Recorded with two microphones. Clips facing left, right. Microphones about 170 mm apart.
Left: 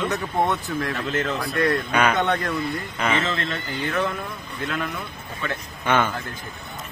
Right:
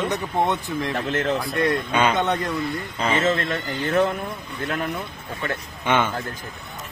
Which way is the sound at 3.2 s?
45° right (ahead or behind).